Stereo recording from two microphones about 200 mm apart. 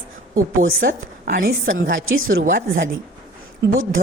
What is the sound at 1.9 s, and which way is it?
Speech, 90° right.